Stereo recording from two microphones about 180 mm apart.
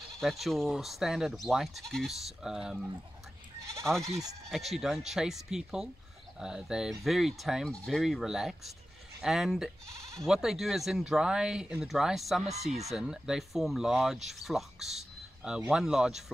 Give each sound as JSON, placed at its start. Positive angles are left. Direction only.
{"t": 0.1, "sound": "speech", "side_deg": 0}